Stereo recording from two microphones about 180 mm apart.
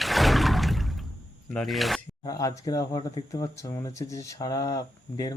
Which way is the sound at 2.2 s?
20° left (ahead or behind).